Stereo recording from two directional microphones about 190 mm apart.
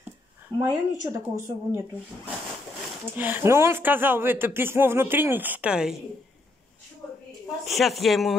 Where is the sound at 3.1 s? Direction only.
10° right (ahead or behind).